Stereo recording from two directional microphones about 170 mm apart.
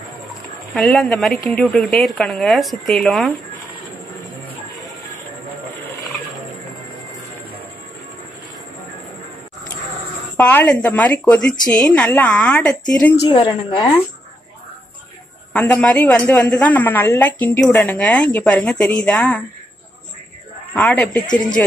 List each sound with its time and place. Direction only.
0.7 s speech: 5° left (ahead or behind)
10.3 s speech: 10° left (ahead or behind)
13.3 s a woman's voice: 30° left (ahead or behind)
15.5 s speech: 5° left (ahead or behind)
20.7 s speech: 10° left (ahead or behind)
21.3 s a woman's voice: 25° left (ahead or behind)